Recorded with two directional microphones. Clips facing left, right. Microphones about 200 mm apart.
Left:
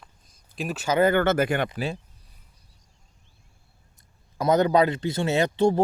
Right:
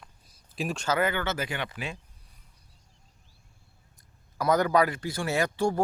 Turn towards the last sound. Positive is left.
turn(degrees=25)  # may be behind; listen again after turning